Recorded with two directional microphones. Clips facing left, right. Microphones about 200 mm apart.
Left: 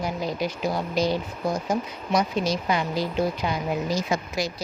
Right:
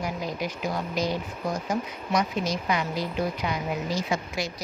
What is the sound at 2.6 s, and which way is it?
Speech, 30° left (ahead or behind).